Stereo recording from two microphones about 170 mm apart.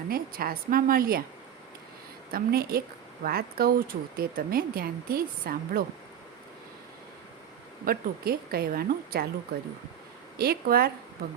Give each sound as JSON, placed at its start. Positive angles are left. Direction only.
{"t": 0.1, "sound": "speech", "side_deg": -60}
{"t": 2.3, "sound": "speech", "side_deg": -60}
{"t": 7.9, "sound": "speech", "side_deg": -60}
{"t": 10.3, "sound": "speech", "side_deg": -65}